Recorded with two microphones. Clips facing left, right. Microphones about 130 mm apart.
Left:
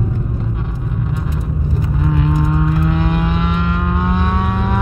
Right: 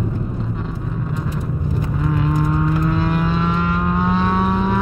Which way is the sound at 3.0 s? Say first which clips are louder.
Left 1 dB; 15° left (ahead or behind).